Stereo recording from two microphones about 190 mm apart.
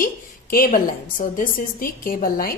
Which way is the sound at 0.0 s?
45° left (ahead or behind).